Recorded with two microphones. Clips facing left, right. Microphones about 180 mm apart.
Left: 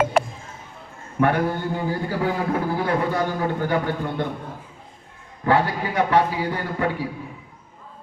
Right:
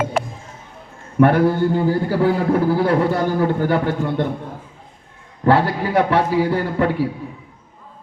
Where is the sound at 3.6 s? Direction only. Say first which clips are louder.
Right 4 dB; 45° right (ahead or behind).